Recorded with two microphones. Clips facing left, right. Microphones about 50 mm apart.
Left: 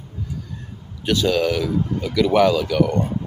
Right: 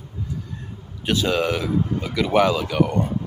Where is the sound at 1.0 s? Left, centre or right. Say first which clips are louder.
Left 2 dB; right.